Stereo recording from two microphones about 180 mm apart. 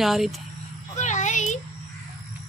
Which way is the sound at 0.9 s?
40° left (ahead or behind).